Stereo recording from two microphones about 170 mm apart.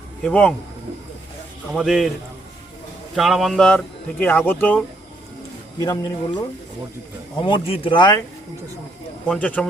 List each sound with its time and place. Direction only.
0.2 s speech: 5° left (ahead or behind)
1.7 s speech: centre (ahead or behind)
3.2 s speech: centre (ahead or behind)
5.8 s speech: 20° left (ahead or behind)
7.4 s speech: 30° left (ahead or behind)
9.2 s speech: 5° left (ahead or behind)